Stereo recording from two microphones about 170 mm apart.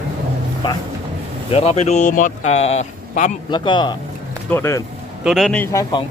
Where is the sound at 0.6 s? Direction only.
25° left (ahead or behind).